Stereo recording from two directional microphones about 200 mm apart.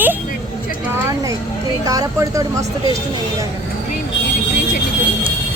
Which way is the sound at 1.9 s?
15° right (ahead or behind).